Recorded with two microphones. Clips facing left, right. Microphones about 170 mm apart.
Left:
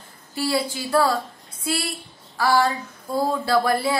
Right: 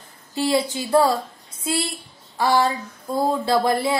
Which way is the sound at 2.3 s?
20° right (ahead or behind).